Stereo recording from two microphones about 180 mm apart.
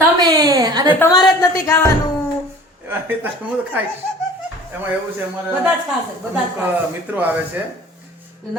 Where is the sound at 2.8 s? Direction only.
10° right (ahead or behind).